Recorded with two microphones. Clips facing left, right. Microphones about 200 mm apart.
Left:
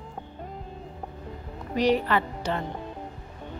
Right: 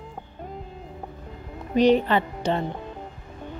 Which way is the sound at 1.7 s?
25° right (ahead or behind).